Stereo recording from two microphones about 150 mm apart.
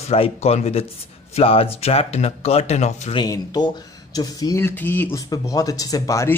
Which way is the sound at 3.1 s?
25° left (ahead or behind).